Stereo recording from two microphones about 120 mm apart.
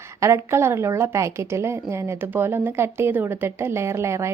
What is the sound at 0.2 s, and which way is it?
A woman's voice, 25° right (ahead or behind).